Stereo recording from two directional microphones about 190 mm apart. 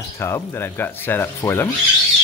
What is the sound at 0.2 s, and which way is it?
Speech, 15° left (ahead or behind).